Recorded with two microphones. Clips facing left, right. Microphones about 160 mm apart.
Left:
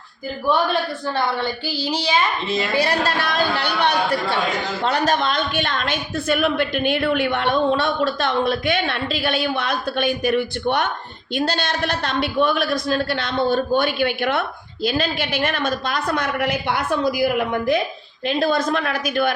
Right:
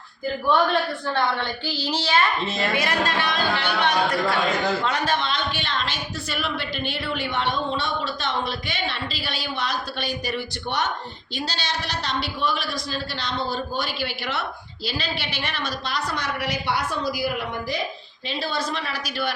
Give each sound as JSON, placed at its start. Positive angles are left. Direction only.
{"t": 1.1, "sound": "a woman's voice", "side_deg": 10}
{"t": 2.7, "sound": "a man's voice", "side_deg": 35}